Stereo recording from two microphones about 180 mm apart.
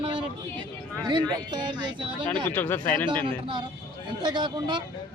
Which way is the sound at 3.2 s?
30° right (ahead or behind).